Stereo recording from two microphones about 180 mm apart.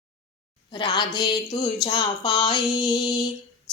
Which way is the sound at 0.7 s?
25° left (ahead or behind).